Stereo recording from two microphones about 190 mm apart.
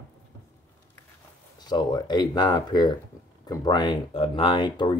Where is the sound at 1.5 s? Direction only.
20° left (ahead or behind).